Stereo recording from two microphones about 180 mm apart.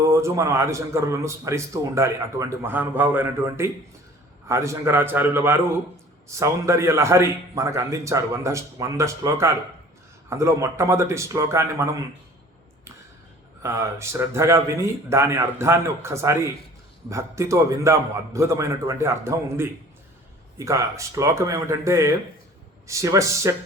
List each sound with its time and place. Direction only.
0.0 s a man's voice: 15° right (ahead or behind)
13.6 s a man's voice: 15° right (ahead or behind)